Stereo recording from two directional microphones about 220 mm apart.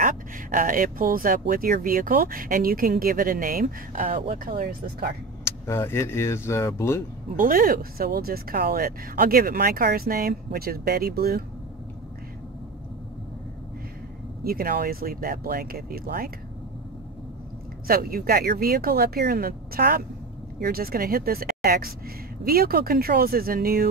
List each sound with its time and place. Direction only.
0.0 s speech: 35° right (ahead or behind)
5.4 s speech: 10° left (ahead or behind)
7.3 s speech: 40° right (ahead or behind)
14.4 s speech: 45° right (ahead or behind)
17.8 s speech: 40° right (ahead or behind)